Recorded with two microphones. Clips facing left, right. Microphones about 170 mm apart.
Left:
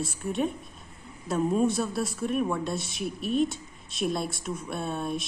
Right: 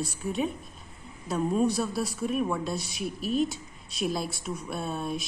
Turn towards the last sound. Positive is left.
turn(degrees=0)  # may be behind; listen again after turning